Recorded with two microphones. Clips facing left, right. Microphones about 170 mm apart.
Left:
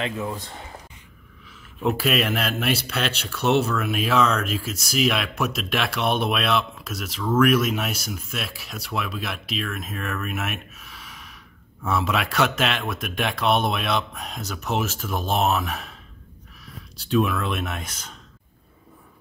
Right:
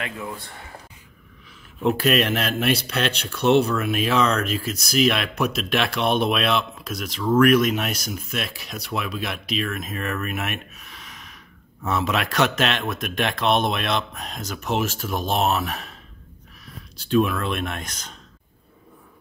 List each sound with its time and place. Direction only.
0.0 s speech: 20° left (ahead or behind)
1.8 s speech: 5° left (ahead or behind)
14.6 s speech: 10° right (ahead or behind)
15.1 s speech: 10° left (ahead or behind)
17.2 s speech: centre (ahead or behind)